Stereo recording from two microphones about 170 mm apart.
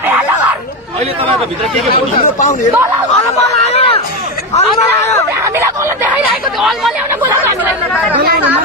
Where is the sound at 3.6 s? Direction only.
35° left (ahead or behind).